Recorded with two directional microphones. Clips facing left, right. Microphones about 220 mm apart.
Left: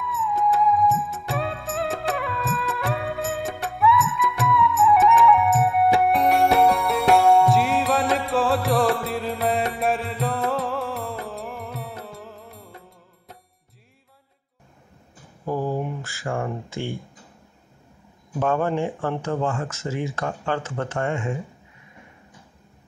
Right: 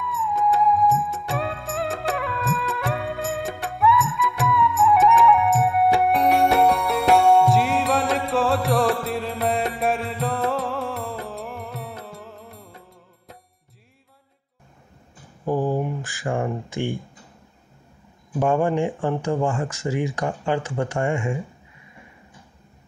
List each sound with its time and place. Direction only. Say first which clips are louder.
0.0 s music: even; centre (ahead or behind)
15.4 s a sound: right 3 dB; 15° right (ahead or behind)
18.4 s speech: right 2 dB; 15° right (ahead or behind)